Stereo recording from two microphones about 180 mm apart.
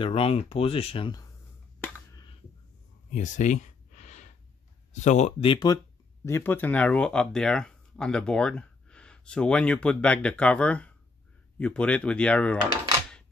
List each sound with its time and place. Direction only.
0.0 s speech: 30° left (ahead or behind)
3.1 s a sound: 45° left (ahead or behind)
4.9 s speech: 40° left (ahead or behind)
6.2 s speech: 15° left (ahead or behind)